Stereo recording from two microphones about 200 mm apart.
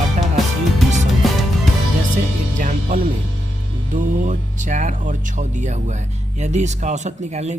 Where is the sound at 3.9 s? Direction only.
40° right (ahead or behind).